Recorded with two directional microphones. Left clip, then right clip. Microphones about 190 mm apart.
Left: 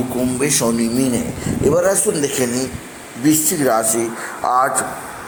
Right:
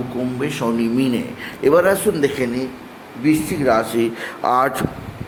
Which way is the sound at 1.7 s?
10° right (ahead or behind).